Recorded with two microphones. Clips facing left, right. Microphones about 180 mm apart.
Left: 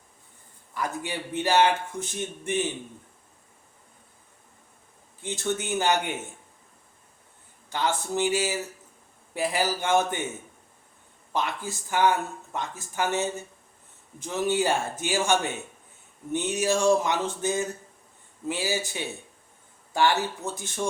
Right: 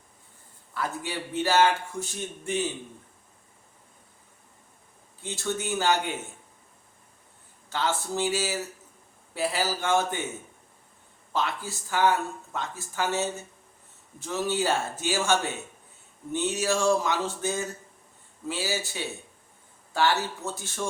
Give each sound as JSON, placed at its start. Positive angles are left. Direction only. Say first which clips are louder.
{"t": 0.7, "sound": "a man's voice", "louder": "left 1 dB", "side_deg": 15}
{"t": 5.2, "sound": "speech", "louder": "left 2 dB", "side_deg": 20}
{"t": 7.7, "sound": "a man's voice", "louder": "left 1 dB", "side_deg": 15}
{"t": 11.3, "sound": "a man's voice", "louder": "even", "side_deg": 15}